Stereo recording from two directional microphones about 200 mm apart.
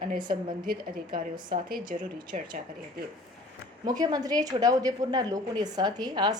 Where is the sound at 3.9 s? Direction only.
20° right (ahead or behind).